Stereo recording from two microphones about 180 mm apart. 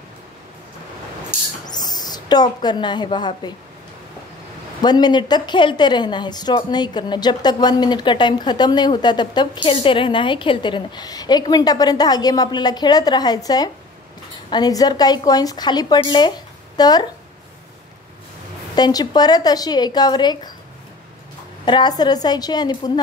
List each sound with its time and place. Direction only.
1.7 s a woman's voice: 20° left (ahead or behind)
4.8 s a woman's voice: 25° left (ahead or behind)
18.8 s a woman's voice: 20° left (ahead or behind)
21.6 s a woman's voice: 25° left (ahead or behind)